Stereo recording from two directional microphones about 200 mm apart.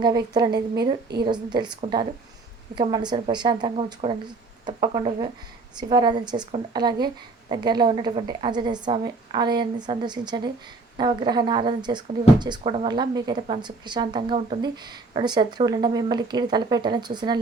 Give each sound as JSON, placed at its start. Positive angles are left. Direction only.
{"t": 0.0, "sound": "a woman's voice", "side_deg": -20}